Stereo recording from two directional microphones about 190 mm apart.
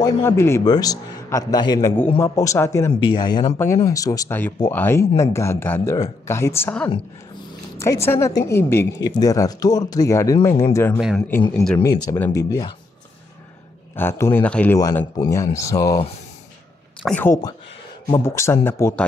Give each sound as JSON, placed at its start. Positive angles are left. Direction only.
{"t": 0.0, "sound": "a man's voice", "side_deg": 15}
{"t": 11.8, "sound": "a man's voice", "side_deg": 15}
{"t": 13.9, "sound": "a man's voice", "side_deg": 15}
{"t": 14.8, "sound": "a man's voice", "side_deg": 20}
{"t": 17.0, "sound": "a man's voice", "side_deg": 10}